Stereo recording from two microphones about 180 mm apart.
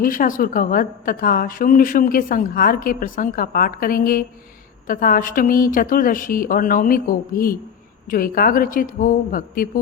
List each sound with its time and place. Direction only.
0.0 s a woman's voice: 50° left (ahead or behind)